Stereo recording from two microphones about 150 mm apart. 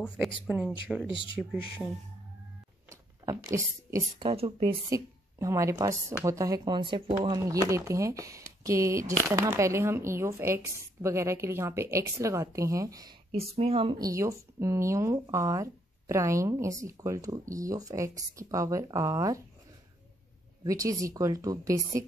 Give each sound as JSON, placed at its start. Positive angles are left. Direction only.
{"t": 0.5, "sound": "speech", "side_deg": -5}
{"t": 2.9, "sound": "a sound", "side_deg": -20}
{"t": 4.2, "sound": "speech", "side_deg": -35}
{"t": 4.8, "sound": "speech", "side_deg": -20}
{"t": 13.3, "sound": "speech", "side_deg": -40}
{"t": 13.9, "sound": "speech", "side_deg": -20}
{"t": 20.6, "sound": "speech", "side_deg": -20}